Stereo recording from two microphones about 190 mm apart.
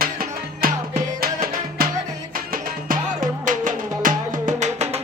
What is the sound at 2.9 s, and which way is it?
Music, 45° right (ahead or behind).